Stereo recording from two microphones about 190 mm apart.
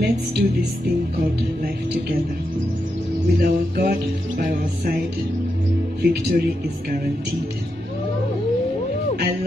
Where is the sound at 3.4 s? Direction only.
50° right (ahead or behind).